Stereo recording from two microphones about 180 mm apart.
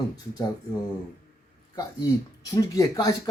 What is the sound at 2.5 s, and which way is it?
Speech, 20° left (ahead or behind).